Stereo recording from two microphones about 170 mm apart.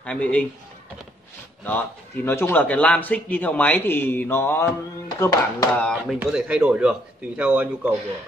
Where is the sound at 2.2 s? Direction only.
15° left (ahead or behind).